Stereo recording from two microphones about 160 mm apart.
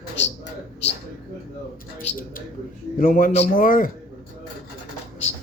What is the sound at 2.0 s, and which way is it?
A man's voice, 60° left (ahead or behind).